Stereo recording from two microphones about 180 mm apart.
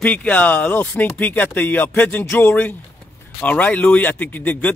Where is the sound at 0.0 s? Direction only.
10° left (ahead or behind).